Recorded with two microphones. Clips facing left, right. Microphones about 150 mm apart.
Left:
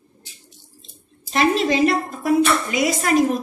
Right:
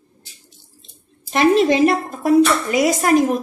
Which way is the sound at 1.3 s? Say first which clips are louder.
Right 4 dB; 55° right (ahead or behind).